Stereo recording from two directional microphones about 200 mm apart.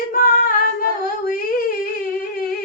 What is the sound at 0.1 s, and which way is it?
Singing, 45° left (ahead or behind).